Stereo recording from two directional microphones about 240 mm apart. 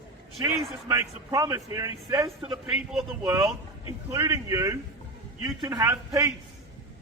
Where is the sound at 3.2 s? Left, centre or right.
Centre.